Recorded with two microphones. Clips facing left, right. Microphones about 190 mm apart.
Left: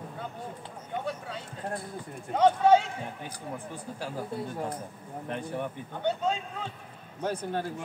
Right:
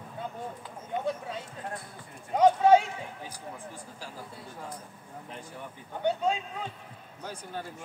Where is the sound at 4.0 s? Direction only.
60° left (ahead or behind).